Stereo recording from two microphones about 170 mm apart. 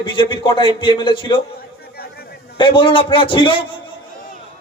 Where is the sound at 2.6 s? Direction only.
30° left (ahead or behind).